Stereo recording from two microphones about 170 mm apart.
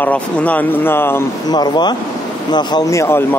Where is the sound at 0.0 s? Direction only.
10° left (ahead or behind).